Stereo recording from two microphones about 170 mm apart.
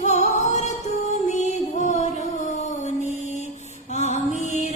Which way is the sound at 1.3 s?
45° left (ahead or behind).